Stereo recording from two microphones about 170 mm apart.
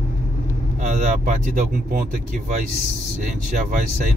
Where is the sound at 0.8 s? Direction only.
50° right (ahead or behind).